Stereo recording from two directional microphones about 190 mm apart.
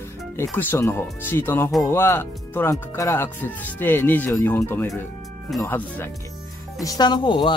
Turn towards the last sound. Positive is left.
turn(degrees=25)  # may be behind; listen again after turning